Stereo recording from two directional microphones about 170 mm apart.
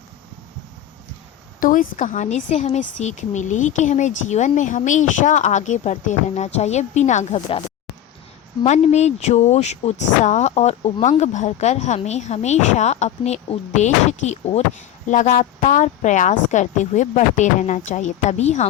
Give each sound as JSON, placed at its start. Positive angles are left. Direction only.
{"t": 1.5, "sound": "speech", "side_deg": 55}
{"t": 8.6, "sound": "speech", "side_deg": 40}